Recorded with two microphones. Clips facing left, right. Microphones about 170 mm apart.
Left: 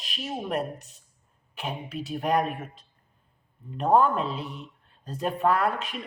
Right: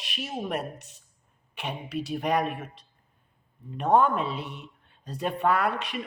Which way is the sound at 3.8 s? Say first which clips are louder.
Left 1 dB; centre (ahead or behind).